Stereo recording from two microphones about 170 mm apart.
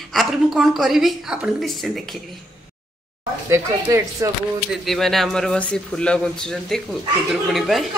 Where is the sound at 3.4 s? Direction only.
15° right (ahead or behind).